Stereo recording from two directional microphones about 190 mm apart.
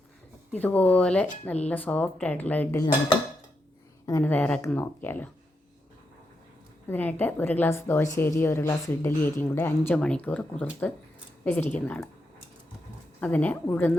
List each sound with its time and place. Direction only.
0.6 s a woman's voice: 10° left (ahead or behind)
4.0 s a woman's voice: 10° left (ahead or behind)
6.8 s a woman's voice: 10° left (ahead or behind)
13.1 s a woman's voice: 10° left (ahead or behind)